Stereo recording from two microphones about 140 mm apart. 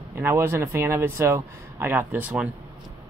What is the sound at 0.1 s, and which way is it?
Speech, 15° right (ahead or behind).